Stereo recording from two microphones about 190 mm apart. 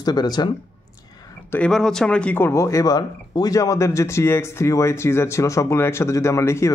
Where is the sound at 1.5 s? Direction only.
5° left (ahead or behind).